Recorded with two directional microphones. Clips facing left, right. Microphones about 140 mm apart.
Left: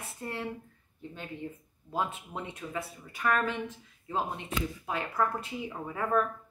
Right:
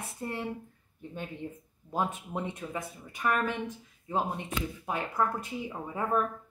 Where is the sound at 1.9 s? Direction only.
15° right (ahead or behind).